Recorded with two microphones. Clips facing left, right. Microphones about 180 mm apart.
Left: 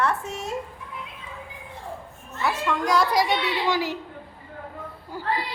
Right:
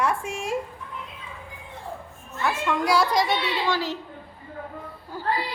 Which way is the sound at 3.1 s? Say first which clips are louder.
Left 1 dB; 10° left (ahead or behind).